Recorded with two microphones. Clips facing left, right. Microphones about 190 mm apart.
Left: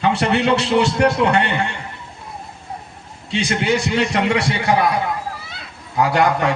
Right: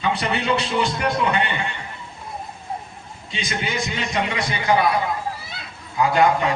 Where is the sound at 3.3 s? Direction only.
75° left (ahead or behind).